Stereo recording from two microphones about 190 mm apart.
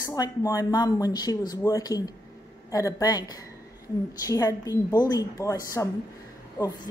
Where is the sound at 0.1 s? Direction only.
15° left (ahead or behind).